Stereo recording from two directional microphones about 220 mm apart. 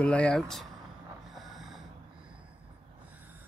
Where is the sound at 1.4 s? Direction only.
Centre (ahead or behind).